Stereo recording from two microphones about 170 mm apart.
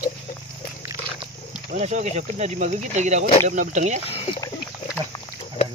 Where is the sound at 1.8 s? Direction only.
40° right (ahead or behind).